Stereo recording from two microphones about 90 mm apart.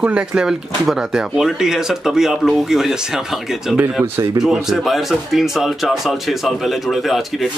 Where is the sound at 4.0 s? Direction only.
30° right (ahead or behind).